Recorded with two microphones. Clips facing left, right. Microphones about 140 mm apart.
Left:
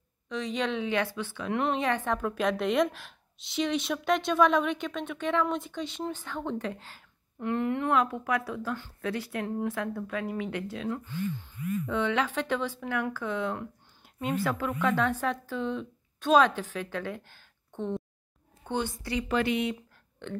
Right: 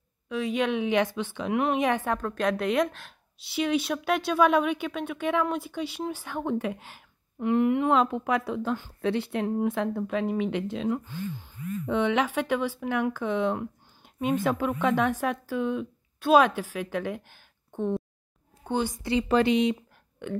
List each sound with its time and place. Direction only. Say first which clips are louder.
0.3 s a woman's voice: right 4 dB; 10° right (ahead or behind)
1.5 s a woman's voice: right 3 dB; 10° right (ahead or behind)
2.2 s a woman's voice: even; centre (ahead or behind)
19.0 s a woman's voice: right 7 dB; 30° right (ahead or behind)